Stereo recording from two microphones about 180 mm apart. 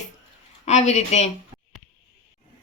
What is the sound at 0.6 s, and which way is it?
Speech, 40° left (ahead or behind).